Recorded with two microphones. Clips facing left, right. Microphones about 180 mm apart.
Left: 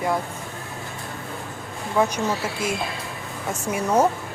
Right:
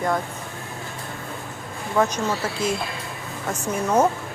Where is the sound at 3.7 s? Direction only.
10° left (ahead or behind).